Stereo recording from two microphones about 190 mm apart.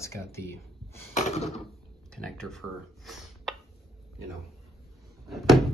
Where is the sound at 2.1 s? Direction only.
5° left (ahead or behind).